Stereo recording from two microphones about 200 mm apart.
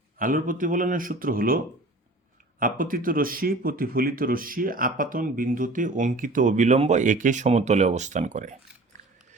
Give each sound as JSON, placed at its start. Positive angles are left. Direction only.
{"t": 0.2, "sound": "speech", "side_deg": -45}